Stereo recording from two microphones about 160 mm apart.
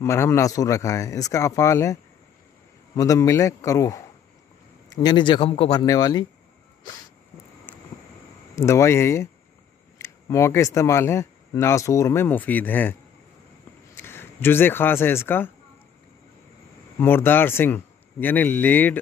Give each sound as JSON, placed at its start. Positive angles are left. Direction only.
{"t": 0.0, "sound": "speech", "side_deg": 15}
{"t": 3.0, "sound": "speech", "side_deg": 20}
{"t": 7.7, "sound": "vehicle", "side_deg": 10}
{"t": 8.5, "sound": "speech", "side_deg": 20}
{"t": 14.0, "sound": "speech", "side_deg": 15}
{"t": 17.0, "sound": "speech", "side_deg": 15}